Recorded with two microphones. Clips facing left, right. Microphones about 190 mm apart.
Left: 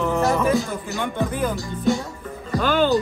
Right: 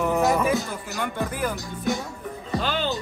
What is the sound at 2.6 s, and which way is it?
Music, 50° left (ahead or behind).